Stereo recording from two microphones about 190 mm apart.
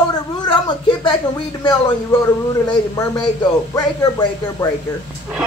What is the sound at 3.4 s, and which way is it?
Speech, 15° left (ahead or behind).